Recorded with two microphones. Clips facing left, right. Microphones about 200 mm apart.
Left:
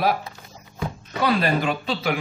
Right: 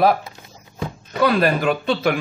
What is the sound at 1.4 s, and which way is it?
Speech, 50° right (ahead or behind).